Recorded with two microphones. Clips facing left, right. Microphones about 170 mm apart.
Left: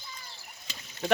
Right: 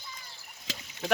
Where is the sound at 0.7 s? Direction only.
90° right.